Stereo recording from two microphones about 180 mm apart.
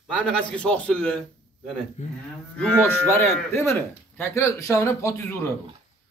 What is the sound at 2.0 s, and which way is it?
Speech, 40° left (ahead or behind).